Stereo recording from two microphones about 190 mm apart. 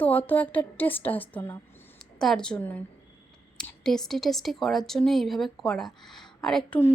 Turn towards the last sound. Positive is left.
turn(degrees=10)  # may be behind; listen again after turning